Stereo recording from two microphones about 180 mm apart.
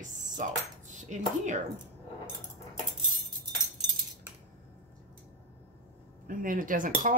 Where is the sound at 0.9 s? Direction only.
40° right (ahead or behind).